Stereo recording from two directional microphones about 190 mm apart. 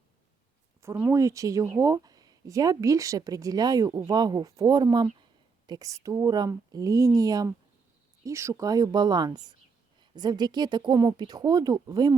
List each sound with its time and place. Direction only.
0.8 s a woman's voice: 15° right (ahead or behind)